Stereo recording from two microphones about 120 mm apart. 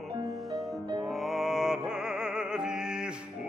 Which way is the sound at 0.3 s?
Centre (ahead or behind).